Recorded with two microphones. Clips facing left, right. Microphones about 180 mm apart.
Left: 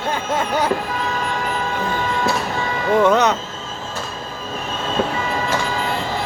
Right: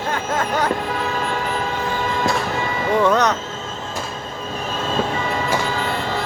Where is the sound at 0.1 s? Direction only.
10° left (ahead or behind).